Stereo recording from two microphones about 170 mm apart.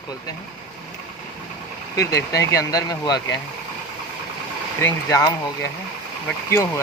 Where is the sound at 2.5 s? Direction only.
20° left (ahead or behind).